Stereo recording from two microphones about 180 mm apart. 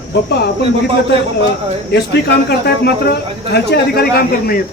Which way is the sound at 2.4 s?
65° left (ahead or behind).